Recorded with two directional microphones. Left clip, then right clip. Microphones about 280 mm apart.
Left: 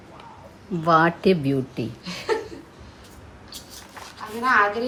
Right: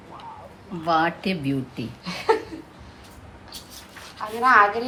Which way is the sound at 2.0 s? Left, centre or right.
Centre.